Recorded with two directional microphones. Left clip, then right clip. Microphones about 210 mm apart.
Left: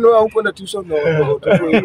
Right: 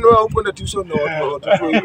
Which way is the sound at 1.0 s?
50° left (ahead or behind).